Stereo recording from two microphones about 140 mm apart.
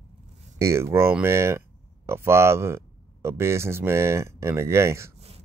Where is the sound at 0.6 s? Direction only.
20° right (ahead or behind).